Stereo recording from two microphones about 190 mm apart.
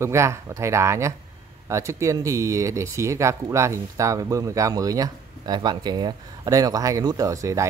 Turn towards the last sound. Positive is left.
turn(degrees=-15)  # may be behind; listen again after turning